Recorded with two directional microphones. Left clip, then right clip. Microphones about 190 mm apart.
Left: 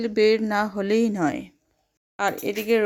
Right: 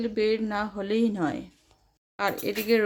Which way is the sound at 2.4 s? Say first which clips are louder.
Left 1 dB; 20° left (ahead or behind).